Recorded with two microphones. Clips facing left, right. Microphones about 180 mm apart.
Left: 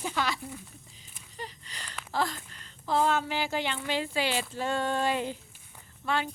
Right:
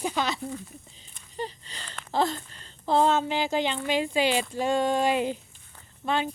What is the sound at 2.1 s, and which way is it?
A woman's voice, 25° right (ahead or behind).